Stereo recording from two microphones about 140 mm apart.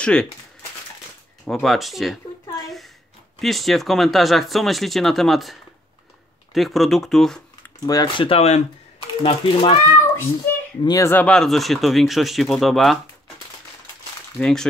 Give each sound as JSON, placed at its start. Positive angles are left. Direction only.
{"t": 0.0, "sound": "speech", "side_deg": 5}
{"t": 1.4, "sound": "speech", "side_deg": 0}
{"t": 2.6, "sound": "a sound", "side_deg": 0}
{"t": 3.3, "sound": "speech", "side_deg": 0}
{"t": 7.8, "sound": "speech", "side_deg": 25}
{"t": 8.2, "sound": "speech", "side_deg": 45}
{"t": 10.4, "sound": "a sound", "side_deg": 15}
{"t": 10.8, "sound": "speech", "side_deg": 30}
{"t": 11.1, "sound": "speech", "side_deg": 10}
{"t": 14.4, "sound": "speech", "side_deg": 5}